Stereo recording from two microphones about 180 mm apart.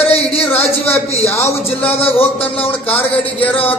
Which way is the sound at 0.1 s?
35° left (ahead or behind).